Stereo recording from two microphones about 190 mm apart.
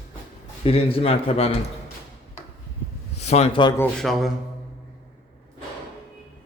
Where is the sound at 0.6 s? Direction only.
30° left (ahead or behind).